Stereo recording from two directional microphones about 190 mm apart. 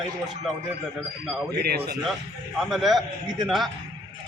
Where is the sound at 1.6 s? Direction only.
55° right (ahead or behind).